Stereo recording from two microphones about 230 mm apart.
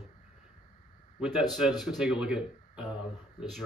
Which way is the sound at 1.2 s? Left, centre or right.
Centre.